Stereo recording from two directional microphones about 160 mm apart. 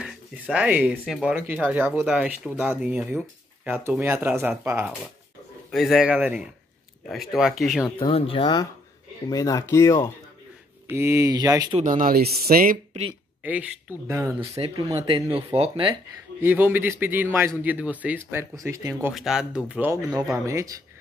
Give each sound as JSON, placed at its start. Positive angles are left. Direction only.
{"t": 0.0, "sound": "speech", "side_deg": -5}
{"t": 5.7, "sound": "speech", "side_deg": 0}
{"t": 8.0, "sound": "speech", "side_deg": 35}
{"t": 10.9, "sound": "speech", "side_deg": -15}
{"t": 11.8, "sound": "speech", "side_deg": -55}
{"t": 13.4, "sound": "speech", "side_deg": -10}
{"t": 15.2, "sound": "speech", "side_deg": -40}
{"t": 16.3, "sound": "speech", "side_deg": -10}
{"t": 19.1, "sound": "speech", "side_deg": -5}